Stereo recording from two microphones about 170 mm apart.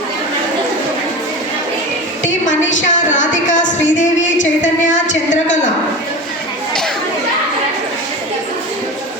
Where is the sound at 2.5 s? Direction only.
90° left.